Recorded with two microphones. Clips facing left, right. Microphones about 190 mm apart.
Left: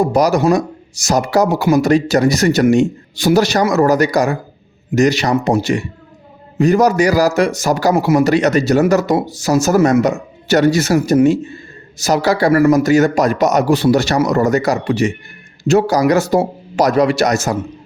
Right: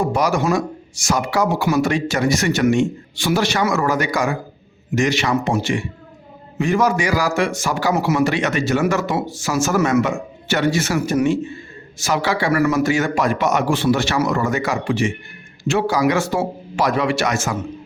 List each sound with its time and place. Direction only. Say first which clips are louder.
0.0 s speech: left 6 dB; 40° left (ahead or behind)